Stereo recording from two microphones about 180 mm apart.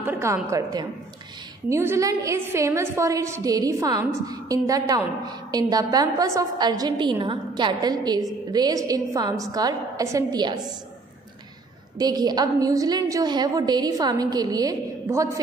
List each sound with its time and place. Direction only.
0.0 s a sound: 15° right (ahead or behind)
0.5 s a woman's voice: 20° right (ahead or behind)
12.0 s a woman's voice: 20° right (ahead or behind)